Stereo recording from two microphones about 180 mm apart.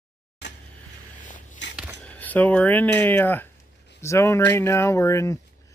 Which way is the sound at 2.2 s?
10° left (ahead or behind).